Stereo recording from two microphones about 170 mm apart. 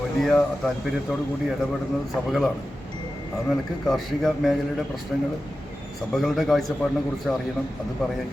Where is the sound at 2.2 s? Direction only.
5° right (ahead or behind).